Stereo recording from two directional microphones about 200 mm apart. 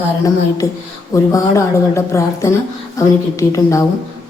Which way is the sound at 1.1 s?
15° left (ahead or behind).